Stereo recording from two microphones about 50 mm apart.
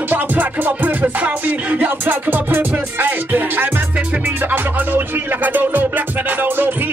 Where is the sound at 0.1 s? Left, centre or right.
Right.